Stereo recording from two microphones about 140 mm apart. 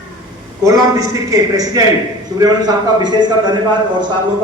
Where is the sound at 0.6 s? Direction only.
25° right (ahead or behind).